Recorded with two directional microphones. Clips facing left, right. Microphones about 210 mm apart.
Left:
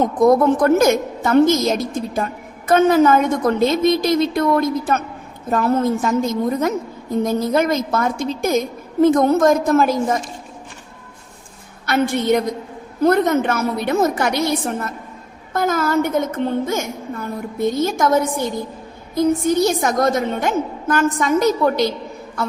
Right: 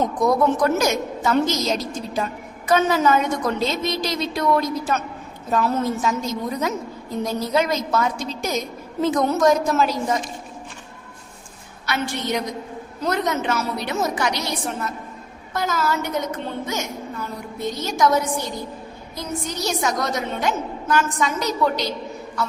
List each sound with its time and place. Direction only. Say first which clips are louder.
0.2 s a woman's voice: left 6 dB; 55° left (ahead or behind)
11.9 s a woman's voice: left 8 dB; 55° left (ahead or behind)